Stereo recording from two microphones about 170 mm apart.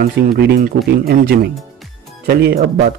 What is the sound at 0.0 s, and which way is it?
A man's voice, 75° right (ahead or behind).